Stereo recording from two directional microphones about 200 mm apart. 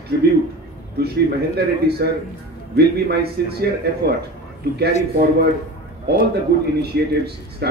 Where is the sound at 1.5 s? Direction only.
55° right (ahead or behind).